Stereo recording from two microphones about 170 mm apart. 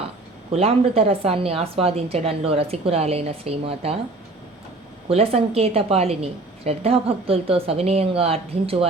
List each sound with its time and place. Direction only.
0.5 s a woman's voice: 35° right (ahead or behind)
5.0 s a woman's voice: 35° right (ahead or behind)